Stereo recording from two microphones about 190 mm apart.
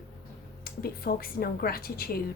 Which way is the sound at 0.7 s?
50° left (ahead or behind).